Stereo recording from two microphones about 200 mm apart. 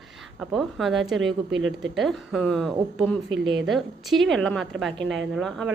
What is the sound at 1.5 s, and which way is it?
Speech, 65° right (ahead or behind).